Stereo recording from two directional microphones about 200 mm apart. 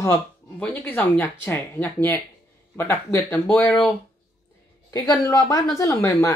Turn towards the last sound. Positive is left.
turn(degrees=15)  # may be behind; listen again after turning